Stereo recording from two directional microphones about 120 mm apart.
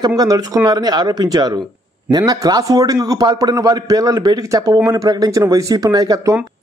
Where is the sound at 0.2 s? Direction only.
30° right (ahead or behind).